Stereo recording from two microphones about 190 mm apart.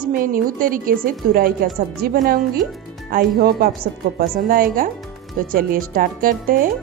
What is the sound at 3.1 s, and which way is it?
A woman's voice, 50° right (ahead or behind).